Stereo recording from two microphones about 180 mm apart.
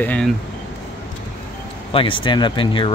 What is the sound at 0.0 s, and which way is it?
Speech, 10° left (ahead or behind).